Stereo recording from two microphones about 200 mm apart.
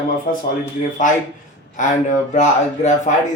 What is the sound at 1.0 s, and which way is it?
A man's voice, 40° left (ahead or behind).